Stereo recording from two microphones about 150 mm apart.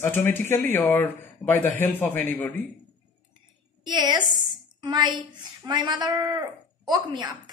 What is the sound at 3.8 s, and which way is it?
A woman's voice, 30° right (ahead or behind).